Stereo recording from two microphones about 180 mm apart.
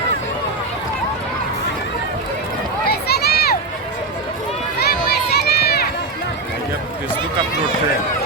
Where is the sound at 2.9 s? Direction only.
60° left (ahead or behind).